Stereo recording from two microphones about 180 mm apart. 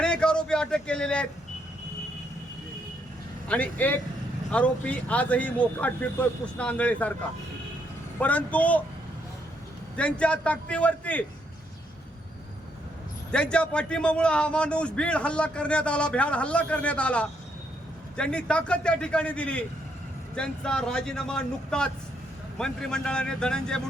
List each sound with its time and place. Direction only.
0.0 s a sound: 5° left (ahead or behind)
3.5 s speech: 10° left (ahead or behind)
8.2 s speech: 10° left (ahead or behind)
10.0 s speech: 5° left (ahead or behind)
13.3 s a man's voice: 5° left (ahead or behind)